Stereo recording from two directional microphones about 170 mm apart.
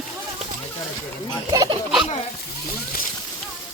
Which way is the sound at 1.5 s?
25° right (ahead or behind).